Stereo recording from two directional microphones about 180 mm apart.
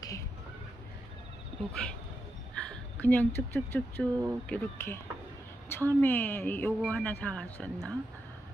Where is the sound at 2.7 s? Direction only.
10° left (ahead or behind).